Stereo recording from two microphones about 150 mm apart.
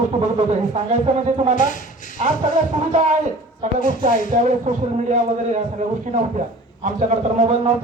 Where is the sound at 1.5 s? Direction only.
60° left (ahead or behind).